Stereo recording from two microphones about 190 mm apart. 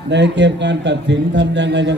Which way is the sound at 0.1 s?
65° right (ahead or behind).